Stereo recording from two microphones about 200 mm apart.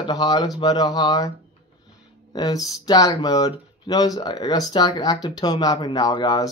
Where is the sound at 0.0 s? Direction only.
20° left (ahead or behind).